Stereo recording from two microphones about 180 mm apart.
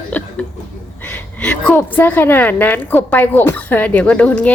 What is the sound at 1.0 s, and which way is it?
A woman's voice, 10° left (ahead or behind).